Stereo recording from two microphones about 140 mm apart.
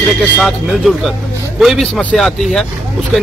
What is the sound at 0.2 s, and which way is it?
A man's voice, centre (ahead or behind).